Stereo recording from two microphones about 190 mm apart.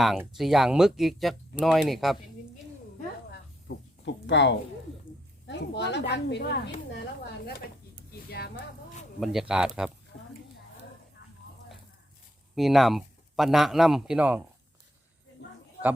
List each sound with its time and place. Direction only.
0.0 s speech: centre (ahead or behind)
3.7 s a sound: 65° left (ahead or behind)
4.0 s speech: 70° left (ahead or behind)
8.3 s speech: 60° left (ahead or behind)
9.2 s speech: 5° right (ahead or behind)
12.5 s speech: centre (ahead or behind)